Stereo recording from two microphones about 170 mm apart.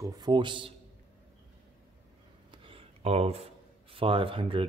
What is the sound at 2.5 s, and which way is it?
Speech, 30° right (ahead or behind).